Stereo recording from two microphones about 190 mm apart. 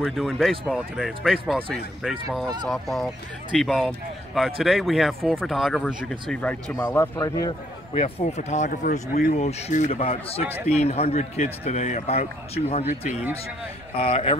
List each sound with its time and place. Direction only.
0.0 s speech: centre (ahead or behind); by 7.5 s 20° left (ahead or behind)
7.9 s a man's voice: 35° left (ahead or behind); by 9.3 s 50° left (ahead or behind)
9.3 s a man's voice: 35° left (ahead or behind)
13.9 s a man's voice: 30° left (ahead or behind)